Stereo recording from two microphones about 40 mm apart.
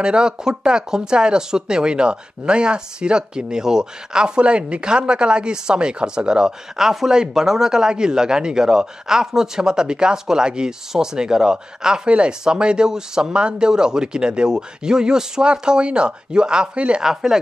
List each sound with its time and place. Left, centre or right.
0.0 s speech: right
6.8 s speech: centre; by 17.0 s right
17.0 s speech: centre